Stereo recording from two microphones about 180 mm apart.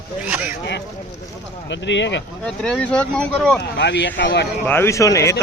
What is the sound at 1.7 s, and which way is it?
Speech, 80° left.